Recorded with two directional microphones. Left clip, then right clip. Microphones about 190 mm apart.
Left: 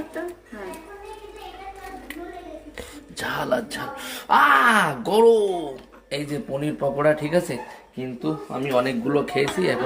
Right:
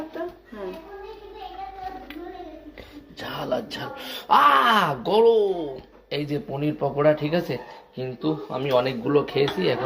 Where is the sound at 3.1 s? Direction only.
30° left (ahead or behind).